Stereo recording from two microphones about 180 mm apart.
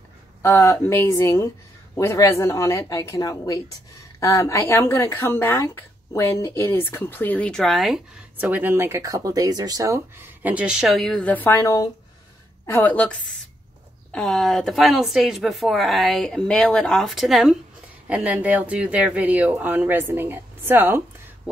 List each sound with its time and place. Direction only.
0.4 s a woman's voice: 15° left (ahead or behind)
14.1 s a woman's voice: 5° left (ahead or behind)